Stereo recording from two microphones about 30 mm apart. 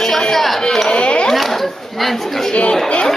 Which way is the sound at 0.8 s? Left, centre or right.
Left.